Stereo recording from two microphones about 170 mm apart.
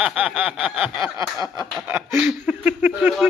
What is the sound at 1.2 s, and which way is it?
Snicker, 20° right (ahead or behind).